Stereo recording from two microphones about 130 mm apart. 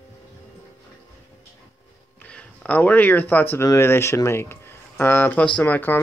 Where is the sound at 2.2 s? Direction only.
10° left (ahead or behind).